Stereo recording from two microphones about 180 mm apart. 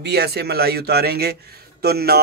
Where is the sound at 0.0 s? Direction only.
65° right (ahead or behind).